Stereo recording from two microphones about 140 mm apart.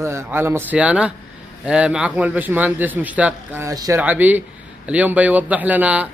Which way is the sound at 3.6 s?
25° right (ahead or behind).